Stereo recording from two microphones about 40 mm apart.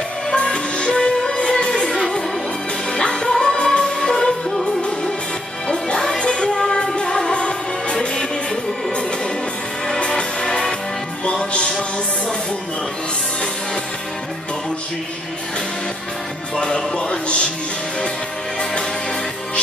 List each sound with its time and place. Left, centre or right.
0.3 s music: left
4.1 s music: centre
5.7 s music: centre
9.9 s music: left
16.5 s music: left